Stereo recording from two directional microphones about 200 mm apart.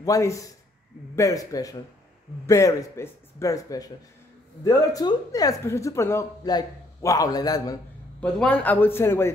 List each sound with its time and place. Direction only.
0.0 s speech: 15° left (ahead or behind)
8.2 s speech: 5° left (ahead or behind)